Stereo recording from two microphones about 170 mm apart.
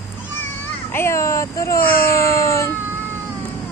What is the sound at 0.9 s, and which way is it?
Speech, 15° left (ahead or behind).